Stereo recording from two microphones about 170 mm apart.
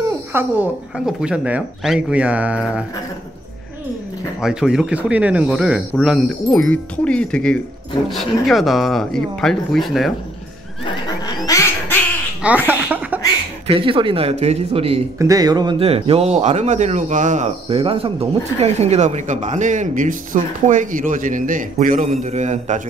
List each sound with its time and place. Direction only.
0.3 s speech: 10° right (ahead or behind)
4.4 s speech: 5° right (ahead or behind)
10.9 s neigh: 20° left (ahead or behind)
11.4 s a sound: 15° left (ahead or behind)
12.6 s cough: 10° right (ahead or behind)
13.7 s speech: 30° right (ahead or behind)
15.1 s a man's voice: 20° right (ahead or behind); by 22.8 s 45° right (ahead or behind)